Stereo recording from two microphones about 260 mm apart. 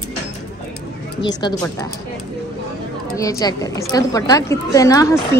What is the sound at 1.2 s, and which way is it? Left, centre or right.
Speech, centre.